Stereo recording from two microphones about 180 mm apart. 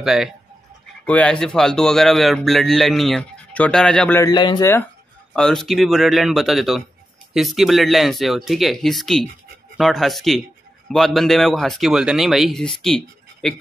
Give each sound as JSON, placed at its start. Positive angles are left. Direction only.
{"t": 0.0, "sound": "a man's voice", "side_deg": 0}
{"t": 4.2, "sound": "speech", "side_deg": 25}
{"t": 5.3, "sound": "a man's voice", "side_deg": 5}